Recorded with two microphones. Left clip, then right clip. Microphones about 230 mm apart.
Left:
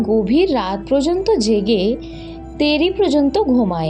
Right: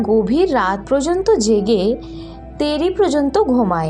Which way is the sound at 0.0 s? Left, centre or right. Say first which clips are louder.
Even; centre.